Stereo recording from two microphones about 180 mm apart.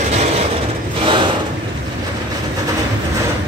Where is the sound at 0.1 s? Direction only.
35° right (ahead or behind).